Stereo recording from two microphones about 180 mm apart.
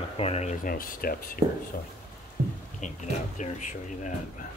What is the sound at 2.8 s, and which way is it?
Speech, 40° left (ahead or behind).